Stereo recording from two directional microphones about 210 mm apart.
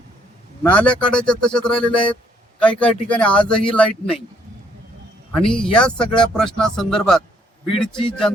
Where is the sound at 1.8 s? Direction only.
25° left (ahead or behind).